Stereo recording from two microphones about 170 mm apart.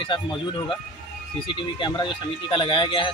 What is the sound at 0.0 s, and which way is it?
Speech, 30° left (ahead or behind).